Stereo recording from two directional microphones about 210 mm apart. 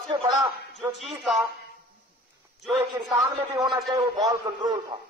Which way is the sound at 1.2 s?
Centre (ahead or behind).